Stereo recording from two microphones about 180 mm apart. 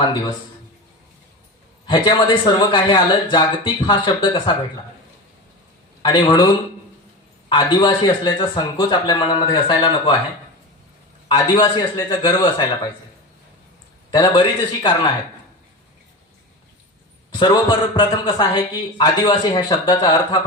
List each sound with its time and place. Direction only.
0.0 s a man's voice: 25° left (ahead or behind)
1.9 s a man's voice: 25° left (ahead or behind)
6.0 s a man's voice: 25° left (ahead or behind)
11.3 s a man's voice: 25° left (ahead or behind)
14.1 s a man's voice: 25° left (ahead or behind)
17.3 s a man's voice: 25° left (ahead or behind)